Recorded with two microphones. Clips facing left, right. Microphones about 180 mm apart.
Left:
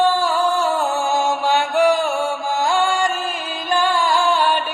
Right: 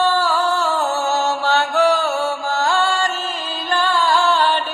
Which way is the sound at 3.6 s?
10° left (ahead or behind).